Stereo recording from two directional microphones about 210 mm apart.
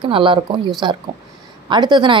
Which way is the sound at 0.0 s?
25° right (ahead or behind).